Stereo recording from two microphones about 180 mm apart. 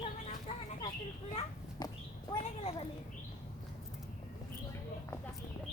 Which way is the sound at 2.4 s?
35° left (ahead or behind).